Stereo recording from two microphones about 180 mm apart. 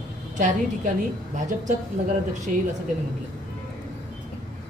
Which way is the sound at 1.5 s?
50° right (ahead or behind).